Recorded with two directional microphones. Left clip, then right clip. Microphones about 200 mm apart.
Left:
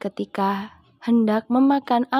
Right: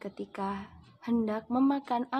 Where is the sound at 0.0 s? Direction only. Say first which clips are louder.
Left 12 dB; 45° left (ahead or behind).